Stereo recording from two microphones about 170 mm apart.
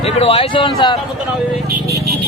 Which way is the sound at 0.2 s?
35° left (ahead or behind).